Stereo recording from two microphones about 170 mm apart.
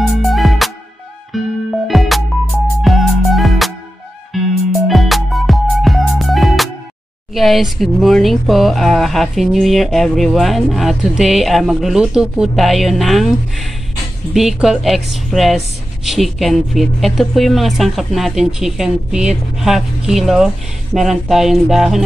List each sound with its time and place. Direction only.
0.0 s music: centre (ahead or behind)
7.3 s speech: centre (ahead or behind)